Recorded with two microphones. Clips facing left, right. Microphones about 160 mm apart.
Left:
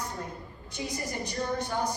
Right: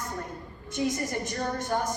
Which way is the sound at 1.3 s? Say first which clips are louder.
Right 2 dB; 60° right (ahead or behind).